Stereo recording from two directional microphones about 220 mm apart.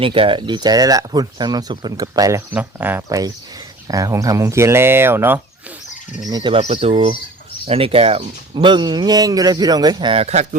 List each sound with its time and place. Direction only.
0.0 s speech: 25° right (ahead or behind)